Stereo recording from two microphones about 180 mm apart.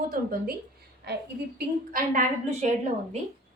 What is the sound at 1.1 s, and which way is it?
Speech, 65° right (ahead or behind).